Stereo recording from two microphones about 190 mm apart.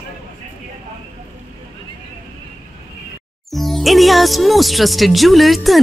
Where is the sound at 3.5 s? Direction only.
Centre (ahead or behind).